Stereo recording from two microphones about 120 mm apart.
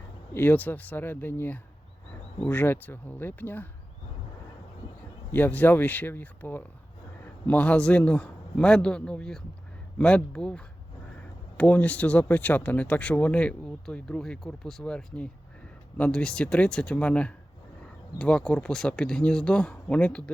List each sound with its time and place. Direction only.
0.3 s speech: 15° left (ahead or behind)
5.3 s speech: 15° left (ahead or behind)